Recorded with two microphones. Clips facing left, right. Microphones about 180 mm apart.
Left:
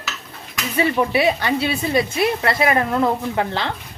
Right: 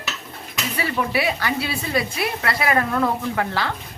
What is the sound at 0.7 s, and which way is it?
A woman's voice, 25° left (ahead or behind).